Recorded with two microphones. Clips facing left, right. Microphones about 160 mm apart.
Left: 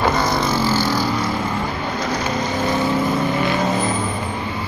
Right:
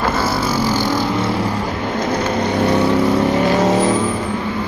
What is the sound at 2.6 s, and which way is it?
Vehicle, 70° right (ahead or behind).